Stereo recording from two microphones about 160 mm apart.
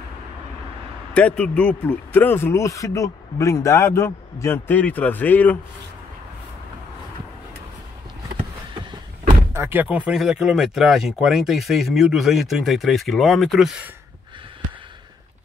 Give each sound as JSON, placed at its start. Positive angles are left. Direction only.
{"t": 1.1, "sound": "speech", "side_deg": 5}
{"t": 9.5, "sound": "speech", "side_deg": -15}